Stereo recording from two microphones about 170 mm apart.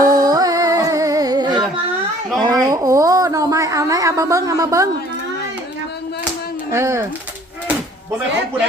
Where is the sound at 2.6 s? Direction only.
20° right (ahead or behind).